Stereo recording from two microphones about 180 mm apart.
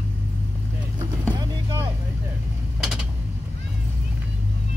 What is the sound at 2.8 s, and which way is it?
Creak, centre (ahead or behind).